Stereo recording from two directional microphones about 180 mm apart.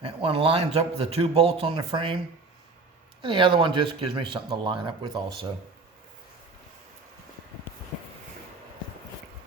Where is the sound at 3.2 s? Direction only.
25° right (ahead or behind).